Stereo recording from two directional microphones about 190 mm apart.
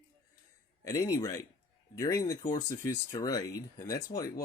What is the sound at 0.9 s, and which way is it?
Speech, 20° left (ahead or behind).